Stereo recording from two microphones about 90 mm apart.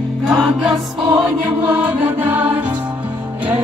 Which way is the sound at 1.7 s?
20° right (ahead or behind).